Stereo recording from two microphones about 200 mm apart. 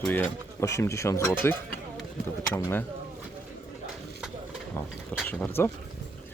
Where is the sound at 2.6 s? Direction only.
10° left (ahead or behind).